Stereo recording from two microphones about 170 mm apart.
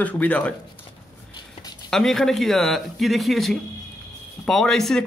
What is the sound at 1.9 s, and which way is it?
Speech, 5° left (ahead or behind).